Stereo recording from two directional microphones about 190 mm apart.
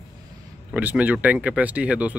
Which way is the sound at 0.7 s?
10° right (ahead or behind).